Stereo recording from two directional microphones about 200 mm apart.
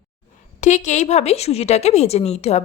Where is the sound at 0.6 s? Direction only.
35° left (ahead or behind).